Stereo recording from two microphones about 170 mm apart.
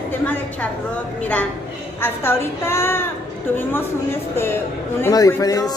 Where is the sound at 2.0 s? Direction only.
15° left (ahead or behind).